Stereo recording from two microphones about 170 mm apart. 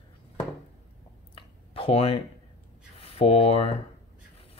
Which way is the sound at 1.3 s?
35° left (ahead or behind).